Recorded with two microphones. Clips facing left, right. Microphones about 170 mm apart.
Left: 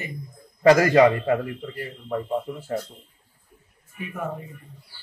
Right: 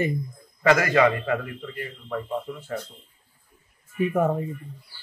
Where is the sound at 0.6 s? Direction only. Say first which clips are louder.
Left 4 dB; 35° left (ahead or behind).